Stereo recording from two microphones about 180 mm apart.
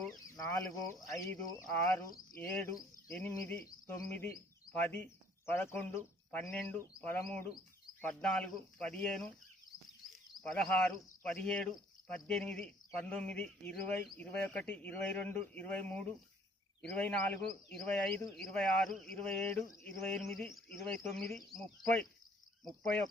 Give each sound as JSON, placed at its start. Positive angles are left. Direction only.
{"t": 0.3, "sound": "chicken", "side_deg": 20}
{"t": 1.2, "sound": "speech", "side_deg": 15}
{"t": 10.4, "sound": "speech", "side_deg": 5}